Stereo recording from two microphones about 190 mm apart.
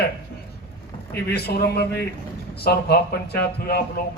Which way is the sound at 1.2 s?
55° left (ahead or behind).